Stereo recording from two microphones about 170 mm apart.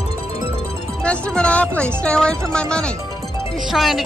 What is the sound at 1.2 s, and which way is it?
Speech, 5° left (ahead or behind).